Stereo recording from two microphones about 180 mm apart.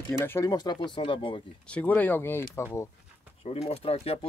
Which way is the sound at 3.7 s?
35° left (ahead or behind).